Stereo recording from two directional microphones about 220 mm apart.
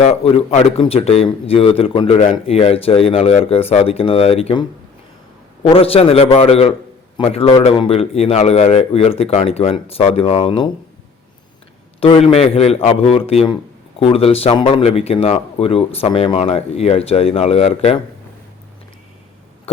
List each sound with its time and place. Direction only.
0.0 s a man's voice: 25° left (ahead or behind)
5.6 s a man's voice: 25° left (ahead or behind)
11.9 s a man's voice: 25° left (ahead or behind)
19.7 s hum: 25° left (ahead or behind)